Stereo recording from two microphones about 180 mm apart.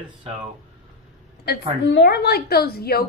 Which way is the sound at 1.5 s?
70° left (ahead or behind).